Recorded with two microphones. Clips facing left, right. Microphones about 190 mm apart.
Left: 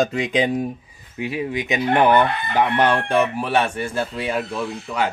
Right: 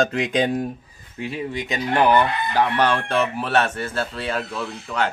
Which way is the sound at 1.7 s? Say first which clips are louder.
Left 2 dB; 20° left (ahead or behind).